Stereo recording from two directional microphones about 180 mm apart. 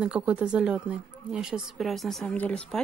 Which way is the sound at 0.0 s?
5° right (ahead or behind).